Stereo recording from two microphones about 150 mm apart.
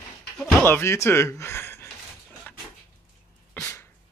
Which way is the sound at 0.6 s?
15° left (ahead or behind).